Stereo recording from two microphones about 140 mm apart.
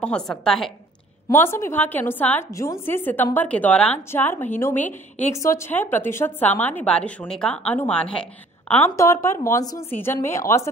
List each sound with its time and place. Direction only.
0.0 s a woman's voice: 5° left (ahead or behind)
1.3 s a woman's voice: 15° left (ahead or behind)
8.9 s a woman's voice: 20° left (ahead or behind)